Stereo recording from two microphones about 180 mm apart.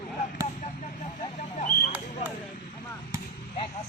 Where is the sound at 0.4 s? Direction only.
40° left (ahead or behind).